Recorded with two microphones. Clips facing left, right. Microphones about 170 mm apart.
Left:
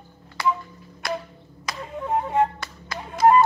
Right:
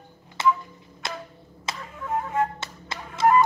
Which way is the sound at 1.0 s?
25° right (ahead or behind).